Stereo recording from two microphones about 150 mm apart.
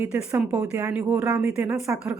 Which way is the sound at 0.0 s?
10° right (ahead or behind).